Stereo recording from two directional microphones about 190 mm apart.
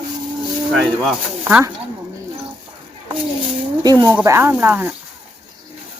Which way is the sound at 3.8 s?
20° right (ahead or behind).